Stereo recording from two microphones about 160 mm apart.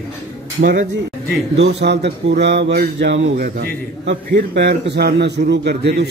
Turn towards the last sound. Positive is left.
turn(degrees=-90)